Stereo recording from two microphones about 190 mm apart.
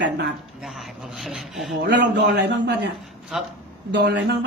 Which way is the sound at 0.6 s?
Centre (ahead or behind).